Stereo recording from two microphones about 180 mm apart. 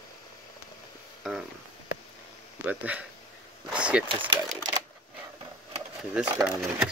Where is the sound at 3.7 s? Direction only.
5° right (ahead or behind).